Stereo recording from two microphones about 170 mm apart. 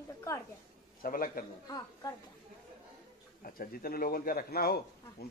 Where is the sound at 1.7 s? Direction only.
20° left (ahead or behind).